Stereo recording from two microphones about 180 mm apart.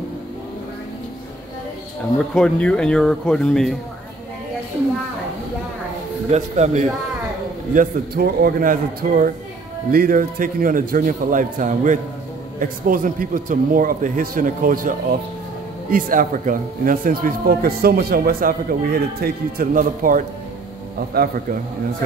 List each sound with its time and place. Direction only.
2.3 s speech: 5° left (ahead or behind)
6.3 s a man's voice: 40° right (ahead or behind)
7.7 s a man's voice: 55° right (ahead or behind)